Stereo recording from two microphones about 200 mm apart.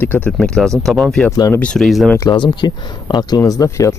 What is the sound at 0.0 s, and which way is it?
Speech, 10° left (ahead or behind).